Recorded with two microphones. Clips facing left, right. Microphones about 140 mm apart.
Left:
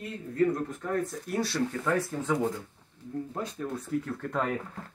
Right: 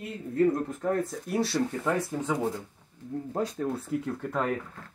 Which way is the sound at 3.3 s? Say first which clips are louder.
Right 8 dB; 30° right (ahead or behind).